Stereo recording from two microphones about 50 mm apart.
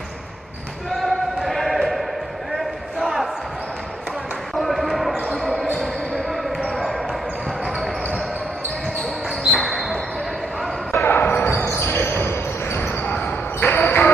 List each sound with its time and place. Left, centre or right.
1.0 s music: centre
3.0 s basketball bounce: centre
4.6 s basketball bounce: centre
5.8 s music: centre
6.7 s basketball bounce: centre
9.5 s basketball bounce: centre
10.9 s basketball bounce: left
11.6 s basketball bounce: left